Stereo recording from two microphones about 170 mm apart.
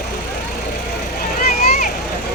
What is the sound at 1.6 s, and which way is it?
Vehicle, 55° left (ahead or behind).